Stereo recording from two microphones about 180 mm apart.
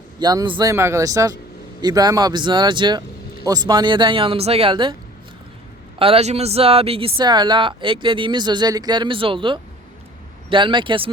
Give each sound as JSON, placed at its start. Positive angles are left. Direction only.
{"t": 0.2, "sound": "speech", "side_deg": -20}
{"t": 6.0, "sound": "speech", "side_deg": -35}